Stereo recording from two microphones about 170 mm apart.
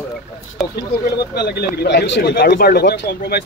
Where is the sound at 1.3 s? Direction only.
70° left (ahead or behind).